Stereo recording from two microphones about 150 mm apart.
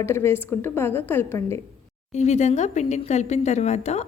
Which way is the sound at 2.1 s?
50° left (ahead or behind).